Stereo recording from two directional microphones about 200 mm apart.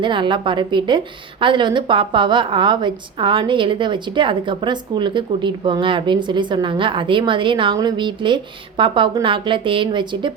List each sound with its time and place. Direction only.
0.0 s a woman's voice: 25° right (ahead or behind)